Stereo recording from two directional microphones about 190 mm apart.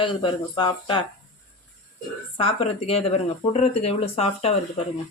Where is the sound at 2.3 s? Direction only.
30° left (ahead or behind).